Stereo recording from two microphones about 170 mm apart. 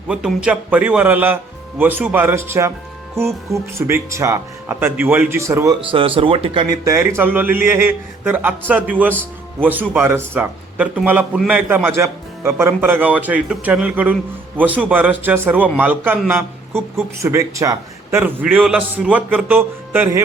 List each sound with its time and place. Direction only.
0.1 s a man's voice: 5° right (ahead or behind)
5.8 s a man's voice: 30° right (ahead or behind); by 20.2 s 10° right (ahead or behind)